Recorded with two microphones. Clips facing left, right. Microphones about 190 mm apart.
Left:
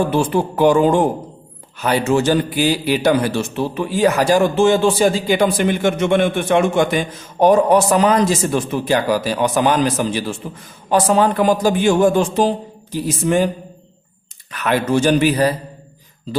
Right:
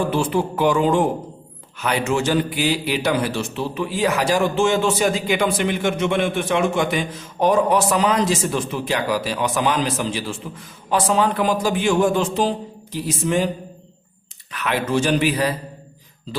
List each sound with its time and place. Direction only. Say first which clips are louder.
0.2 s a man's voice: left 4 dB; 40° left (ahead or behind)
14.5 s a man's voice: left 4 dB; 45° left (ahead or behind)